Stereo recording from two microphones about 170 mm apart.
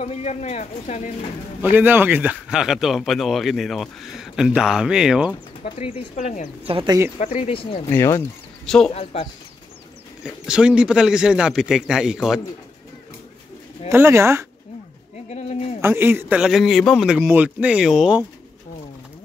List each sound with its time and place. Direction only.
0.0 s speech: 40° left (ahead or behind)
1.6 s speech: 10° right (ahead or behind)
5.6 s speech: 35° left (ahead or behind)
6.7 s speech: 30° right (ahead or behind)
7.2 s speech: 45° left (ahead or behind)
7.5 s speech: 35° left (ahead or behind)
7.9 s speech: 15° left (ahead or behind)
8.6 s speech: 5° left (ahead or behind)
8.9 s speech: 35° left (ahead or behind)
10.2 s speech: 5° right (ahead or behind)
13.8 s speech: 15° right (ahead or behind)
15.2 s speech: 40° left (ahead or behind)
15.8 s speech: 15° right (ahead or behind)